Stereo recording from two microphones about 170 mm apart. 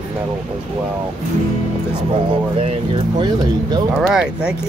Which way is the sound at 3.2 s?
25° right (ahead or behind).